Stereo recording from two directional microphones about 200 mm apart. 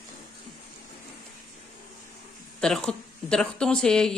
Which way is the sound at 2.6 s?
5° left (ahead or behind).